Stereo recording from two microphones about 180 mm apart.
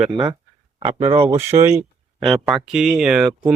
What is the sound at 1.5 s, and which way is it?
Speech, 25° right (ahead or behind).